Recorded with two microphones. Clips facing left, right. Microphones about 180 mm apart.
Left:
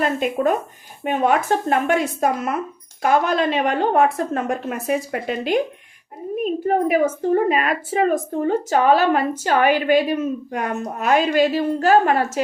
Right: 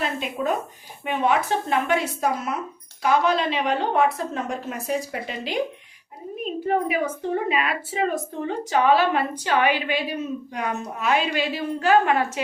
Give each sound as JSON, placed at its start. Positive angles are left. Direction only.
{"t": 0.0, "sound": "a woman's voice", "side_deg": 50}